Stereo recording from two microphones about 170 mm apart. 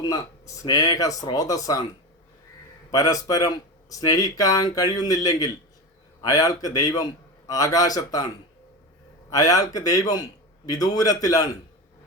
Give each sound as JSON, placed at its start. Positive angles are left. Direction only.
{"t": 0.0, "sound": "speech", "side_deg": 20}
{"t": 2.9, "sound": "speech", "side_deg": 20}
{"t": 9.3, "sound": "speech", "side_deg": 20}